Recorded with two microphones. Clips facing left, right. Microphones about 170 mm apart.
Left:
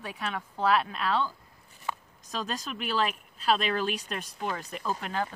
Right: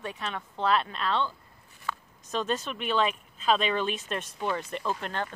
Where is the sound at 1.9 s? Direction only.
20° left (ahead or behind).